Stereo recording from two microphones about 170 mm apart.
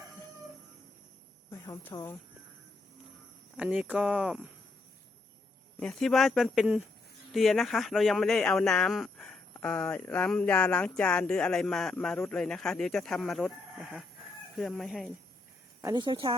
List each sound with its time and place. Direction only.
1.5 s a woman's voice: 15° left (ahead or behind)
3.6 s speech: 10° right (ahead or behind)
5.8 s speech: 5° left (ahead or behind)
15.8 s speech: 25° right (ahead or behind)